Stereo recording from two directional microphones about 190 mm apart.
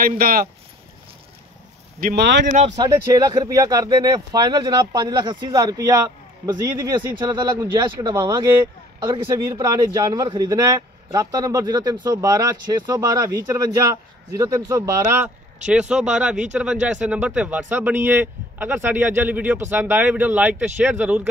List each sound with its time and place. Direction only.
0.0 s speech: 50° right (ahead or behind)
2.0 s speech: 45° right (ahead or behind)
2.7 s a man's voice: 20° right (ahead or behind)